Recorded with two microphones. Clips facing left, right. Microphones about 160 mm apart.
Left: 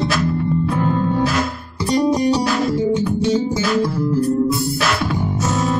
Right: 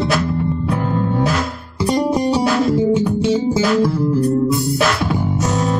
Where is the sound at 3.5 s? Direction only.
30° right (ahead or behind).